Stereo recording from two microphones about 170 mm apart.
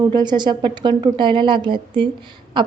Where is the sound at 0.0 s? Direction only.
25° right (ahead or behind).